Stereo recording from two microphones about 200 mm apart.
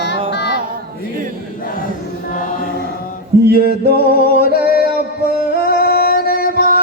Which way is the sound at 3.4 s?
50° right (ahead or behind).